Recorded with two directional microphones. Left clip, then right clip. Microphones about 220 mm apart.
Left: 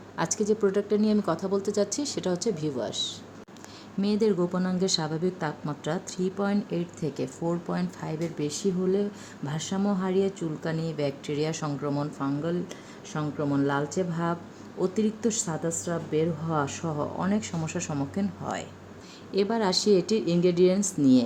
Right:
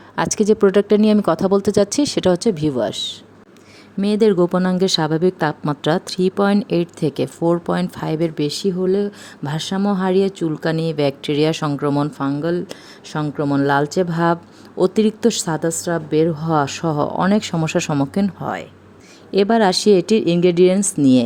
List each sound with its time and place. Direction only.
0.2 s speech: 40° right (ahead or behind)
4.0 s a woman's voice: 35° right (ahead or behind)